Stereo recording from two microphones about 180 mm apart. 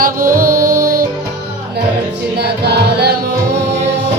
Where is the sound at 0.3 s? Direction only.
55° right (ahead or behind).